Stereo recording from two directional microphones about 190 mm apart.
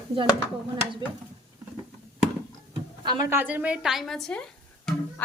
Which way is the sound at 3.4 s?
10° right (ahead or behind).